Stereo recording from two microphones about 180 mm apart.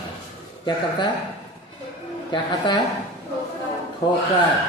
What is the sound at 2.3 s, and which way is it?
Speech, 25° left (ahead or behind).